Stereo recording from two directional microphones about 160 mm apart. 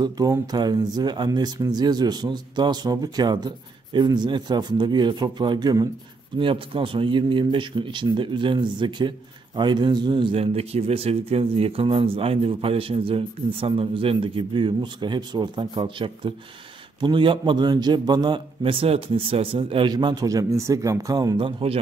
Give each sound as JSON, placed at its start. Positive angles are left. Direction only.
{"t": 0.0, "sound": "speech", "side_deg": -25}